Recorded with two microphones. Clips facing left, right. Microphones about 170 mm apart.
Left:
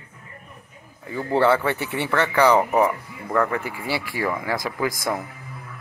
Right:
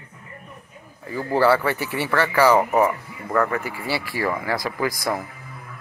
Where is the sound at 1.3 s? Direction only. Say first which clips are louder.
Right 1 dB; 20° left (ahead or behind).